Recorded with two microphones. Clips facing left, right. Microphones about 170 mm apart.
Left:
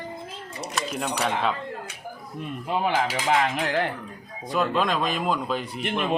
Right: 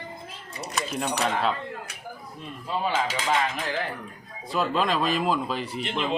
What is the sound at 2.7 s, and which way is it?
Speech, 60° left (ahead or behind).